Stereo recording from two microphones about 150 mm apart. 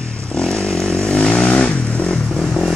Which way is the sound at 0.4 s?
5° left (ahead or behind).